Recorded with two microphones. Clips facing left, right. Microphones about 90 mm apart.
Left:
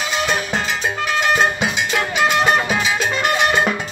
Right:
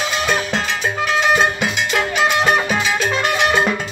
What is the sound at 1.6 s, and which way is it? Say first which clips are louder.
Music: right 1 dB; 10° left (ahead or behind).